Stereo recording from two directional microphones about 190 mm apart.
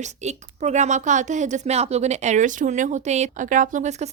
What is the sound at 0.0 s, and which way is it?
A woman's voice, 35° right (ahead or behind).